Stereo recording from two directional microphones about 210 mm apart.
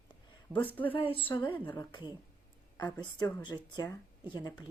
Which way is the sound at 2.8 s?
20° left (ahead or behind).